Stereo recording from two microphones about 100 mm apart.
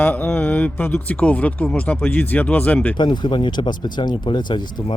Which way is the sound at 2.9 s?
50° left (ahead or behind).